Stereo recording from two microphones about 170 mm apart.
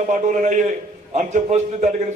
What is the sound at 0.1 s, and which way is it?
A man's voice, 45° right (ahead or behind).